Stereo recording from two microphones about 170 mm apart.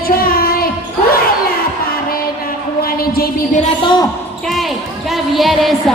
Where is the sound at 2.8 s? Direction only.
60° left (ahead or behind).